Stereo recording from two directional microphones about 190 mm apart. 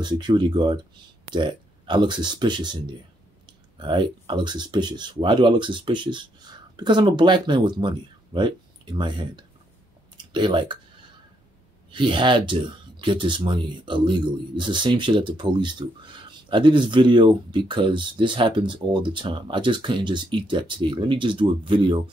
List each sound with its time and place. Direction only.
0.0 s speech: 25° right (ahead or behind)
11.9 s speech: 25° right (ahead or behind)